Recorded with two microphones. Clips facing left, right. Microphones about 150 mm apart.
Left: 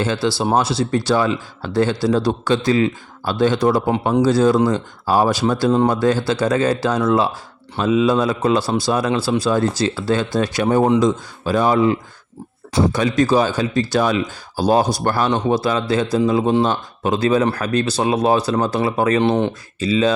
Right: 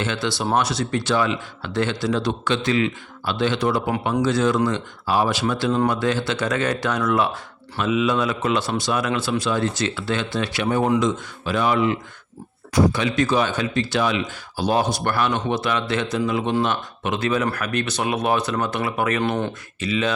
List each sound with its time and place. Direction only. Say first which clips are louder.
0.0 s speech: left 5 dB; 35° left (ahead or behind)